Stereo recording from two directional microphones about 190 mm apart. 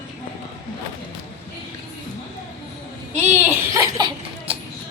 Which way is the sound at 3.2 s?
10° right (ahead or behind).